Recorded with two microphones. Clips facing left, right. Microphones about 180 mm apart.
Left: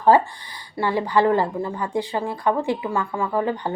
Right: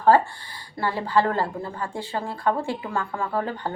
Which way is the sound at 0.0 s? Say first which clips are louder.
Left 2 dB; 15° left (ahead or behind).